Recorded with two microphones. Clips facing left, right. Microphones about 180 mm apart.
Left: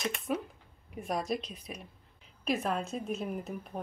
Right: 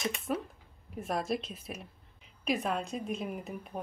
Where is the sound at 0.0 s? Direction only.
Centre (ahead or behind).